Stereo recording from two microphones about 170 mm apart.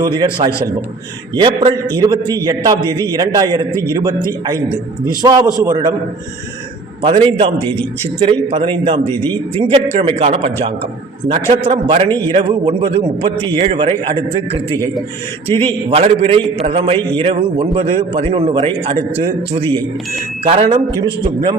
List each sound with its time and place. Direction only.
0.0 s a man's voice: 25° right (ahead or behind)
7.0 s a man's voice: 30° right (ahead or behind)
15.9 s a man's voice: 35° right (ahead or behind)